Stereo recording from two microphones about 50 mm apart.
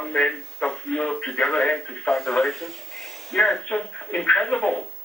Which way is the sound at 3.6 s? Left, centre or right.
Left.